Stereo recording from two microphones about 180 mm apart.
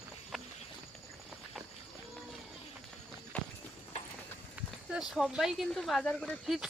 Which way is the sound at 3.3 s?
10° left (ahead or behind).